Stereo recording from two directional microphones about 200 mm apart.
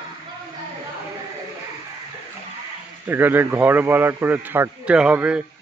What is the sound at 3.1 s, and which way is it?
A man's voice, 10° right (ahead or behind).